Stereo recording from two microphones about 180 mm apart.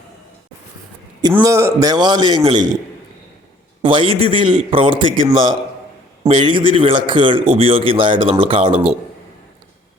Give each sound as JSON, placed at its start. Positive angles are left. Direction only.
{"t": 1.4, "sound": "a man's voice", "side_deg": -15}
{"t": 3.8, "sound": "a man's voice", "side_deg": -30}